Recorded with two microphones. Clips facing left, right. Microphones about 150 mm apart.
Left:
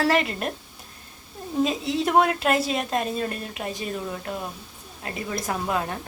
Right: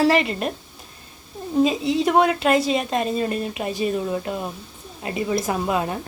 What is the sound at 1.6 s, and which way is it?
A woman's voice, centre (ahead or behind).